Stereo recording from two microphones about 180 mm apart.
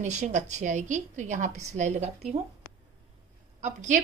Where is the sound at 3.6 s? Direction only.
40° right (ahead or behind).